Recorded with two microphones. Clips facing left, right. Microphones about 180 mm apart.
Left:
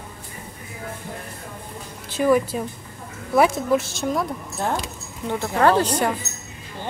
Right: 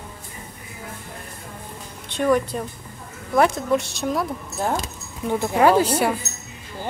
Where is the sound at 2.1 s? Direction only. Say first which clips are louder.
Left 1 dB; 5° left (ahead or behind).